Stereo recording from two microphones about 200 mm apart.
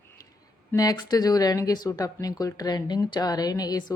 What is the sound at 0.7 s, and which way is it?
Speech, 20° left (ahead or behind).